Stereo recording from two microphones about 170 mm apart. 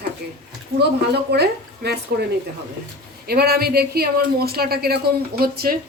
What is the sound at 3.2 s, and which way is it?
Speech, 65° right (ahead or behind).